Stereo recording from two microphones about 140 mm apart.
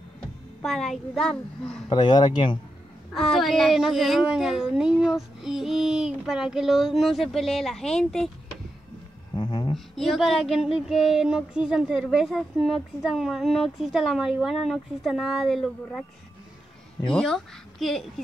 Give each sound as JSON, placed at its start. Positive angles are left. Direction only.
{"t": 0.6, "sound": "a child's voice", "side_deg": 5}
{"t": 1.9, "sound": "speech", "side_deg": 30}
{"t": 3.2, "sound": "child singing", "side_deg": 0}
{"t": 9.3, "sound": "a sound", "side_deg": 30}
{"t": 9.9, "sound": "child singing", "side_deg": 0}
{"t": 17.1, "sound": "child singing", "side_deg": 0}